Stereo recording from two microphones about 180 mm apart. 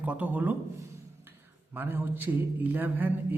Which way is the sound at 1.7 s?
10° right (ahead or behind).